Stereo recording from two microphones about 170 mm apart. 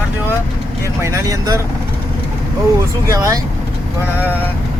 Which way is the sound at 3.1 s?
20° right (ahead or behind).